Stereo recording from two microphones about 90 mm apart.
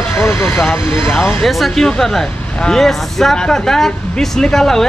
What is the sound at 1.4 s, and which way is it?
Speech, 5° left (ahead or behind).